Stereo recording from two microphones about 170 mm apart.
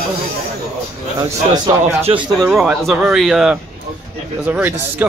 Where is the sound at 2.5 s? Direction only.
5° right (ahead or behind).